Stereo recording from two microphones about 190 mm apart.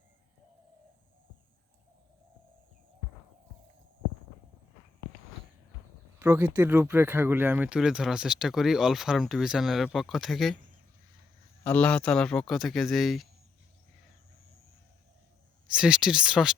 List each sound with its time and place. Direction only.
6.1 s speech: 15° right (ahead or behind)
11.6 s speech: 10° left (ahead or behind)
15.7 s speech: 5° right (ahead or behind)